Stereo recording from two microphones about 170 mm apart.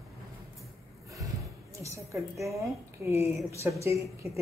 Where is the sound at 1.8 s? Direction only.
15° right (ahead or behind).